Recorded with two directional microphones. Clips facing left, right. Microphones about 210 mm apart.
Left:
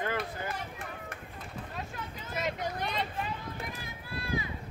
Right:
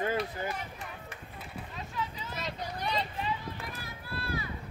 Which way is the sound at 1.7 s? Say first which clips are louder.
Right 5 dB; 50° left (ahead or behind).